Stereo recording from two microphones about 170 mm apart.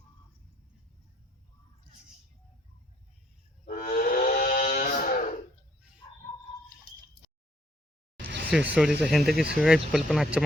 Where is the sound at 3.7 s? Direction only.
55° left (ahead or behind).